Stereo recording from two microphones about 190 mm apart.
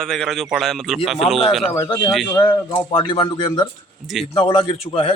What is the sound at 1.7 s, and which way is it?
Speech, 15° left (ahead or behind).